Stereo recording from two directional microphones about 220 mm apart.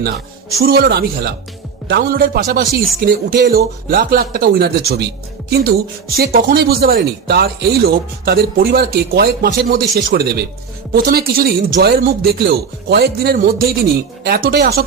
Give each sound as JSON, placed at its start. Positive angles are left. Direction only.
{"t": 0.6, "sound": "speech", "side_deg": -45}